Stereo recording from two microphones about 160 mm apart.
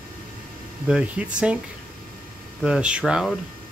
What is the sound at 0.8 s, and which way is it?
Speech, 5° right (ahead or behind).